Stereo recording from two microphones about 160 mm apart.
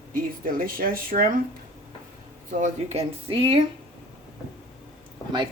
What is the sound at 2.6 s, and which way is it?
Speech, 40° right (ahead or behind).